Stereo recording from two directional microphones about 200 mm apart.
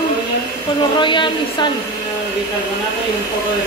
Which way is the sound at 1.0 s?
25° left (ahead or behind).